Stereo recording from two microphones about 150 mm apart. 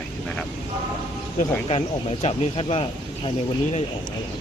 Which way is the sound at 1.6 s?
40° left (ahead or behind).